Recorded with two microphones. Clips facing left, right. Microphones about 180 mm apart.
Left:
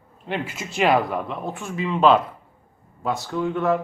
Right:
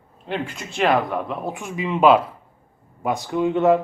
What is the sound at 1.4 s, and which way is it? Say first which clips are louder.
A man's voice: right 1 dB; 15° right (ahead or behind).